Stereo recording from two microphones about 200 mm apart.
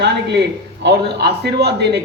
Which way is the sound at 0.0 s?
60° right (ahead or behind).